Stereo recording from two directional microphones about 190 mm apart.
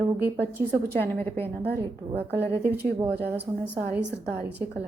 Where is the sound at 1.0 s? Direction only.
10° left (ahead or behind).